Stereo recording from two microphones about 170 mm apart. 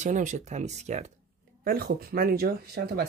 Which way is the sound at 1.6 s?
60° right (ahead or behind).